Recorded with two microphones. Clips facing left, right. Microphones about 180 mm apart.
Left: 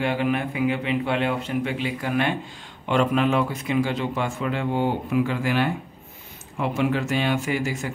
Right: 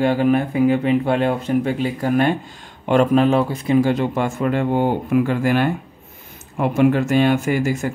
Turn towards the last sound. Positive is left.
turn(degrees=-45)  # may be behind; listen again after turning